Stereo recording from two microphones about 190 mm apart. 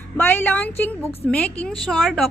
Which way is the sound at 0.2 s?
10° left (ahead or behind).